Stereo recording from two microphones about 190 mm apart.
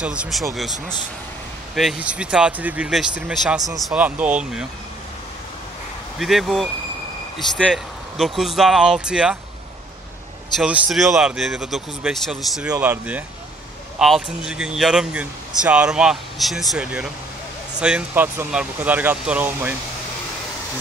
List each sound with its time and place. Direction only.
0.0 s speech: 5° right (ahead or behind)
6.1 s speech: centre (ahead or behind)
10.6 s speech: 5° right (ahead or behind)